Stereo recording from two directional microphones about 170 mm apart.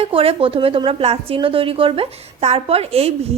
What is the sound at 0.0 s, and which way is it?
Speech, 35° right (ahead or behind).